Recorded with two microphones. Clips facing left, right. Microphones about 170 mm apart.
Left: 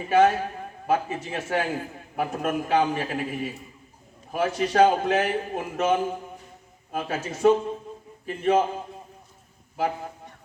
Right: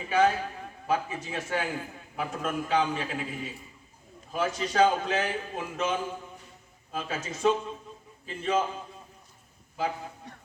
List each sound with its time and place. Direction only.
0.1 s a man's voice: 45° left (ahead or behind)